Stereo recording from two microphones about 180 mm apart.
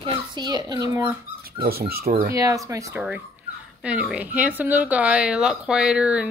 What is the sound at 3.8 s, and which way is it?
Speech, 5° right (ahead or behind).